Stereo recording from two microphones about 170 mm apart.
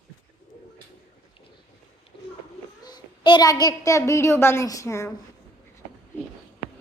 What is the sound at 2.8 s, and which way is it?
A child's voice, 25° left (ahead or behind).